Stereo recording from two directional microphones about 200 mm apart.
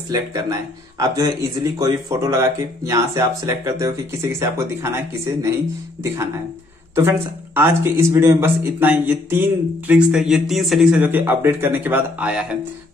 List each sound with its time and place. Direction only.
0.1 s speech: 15° right (ahead or behind)
7.5 s speech: 10° right (ahead or behind)